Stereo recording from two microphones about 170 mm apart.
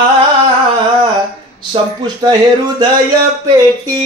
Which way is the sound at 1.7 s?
25° right (ahead or behind).